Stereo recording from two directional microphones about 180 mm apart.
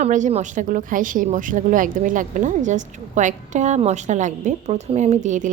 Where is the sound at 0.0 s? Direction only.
40° right (ahead or behind).